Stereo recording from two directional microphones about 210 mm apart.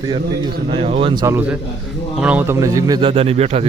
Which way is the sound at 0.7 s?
25° right (ahead or behind).